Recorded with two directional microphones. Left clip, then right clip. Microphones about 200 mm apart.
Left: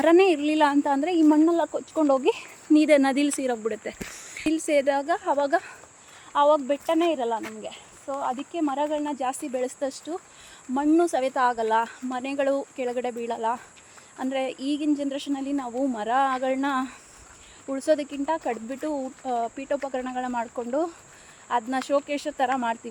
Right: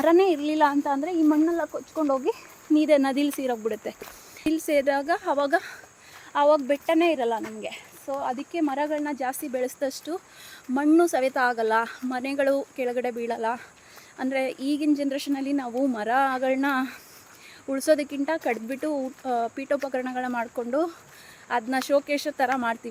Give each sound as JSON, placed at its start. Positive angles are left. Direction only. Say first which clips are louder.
{"t": 0.0, "sound": "speech", "louder": "left 1 dB", "side_deg": 10}